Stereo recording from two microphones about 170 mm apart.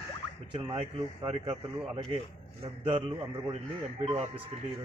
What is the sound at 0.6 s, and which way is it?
A man's voice, 30° right (ahead or behind).